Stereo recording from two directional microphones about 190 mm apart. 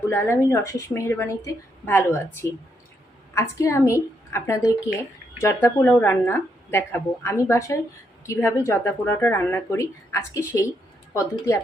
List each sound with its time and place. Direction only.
0.1 s speech: 10° left (ahead or behind)